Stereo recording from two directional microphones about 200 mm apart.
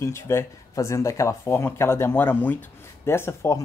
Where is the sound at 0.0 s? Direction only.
15° left (ahead or behind).